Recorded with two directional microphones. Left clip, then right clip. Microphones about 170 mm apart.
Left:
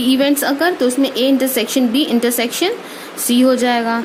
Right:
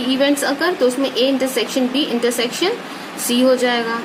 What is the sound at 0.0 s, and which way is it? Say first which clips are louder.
A woman's voice: left 2 dB; 50° left (ahead or behind).